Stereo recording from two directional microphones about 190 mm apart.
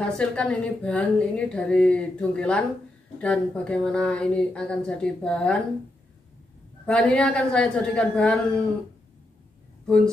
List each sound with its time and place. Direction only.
0.0 s a woman's voice: 5° left (ahead or behind)
6.9 s a woman's voice: 5° left (ahead or behind)